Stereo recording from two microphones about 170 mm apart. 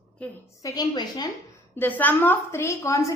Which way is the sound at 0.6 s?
20° left (ahead or behind).